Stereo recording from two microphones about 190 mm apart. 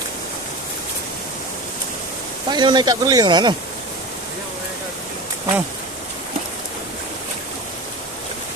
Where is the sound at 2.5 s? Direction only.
25° right (ahead or behind).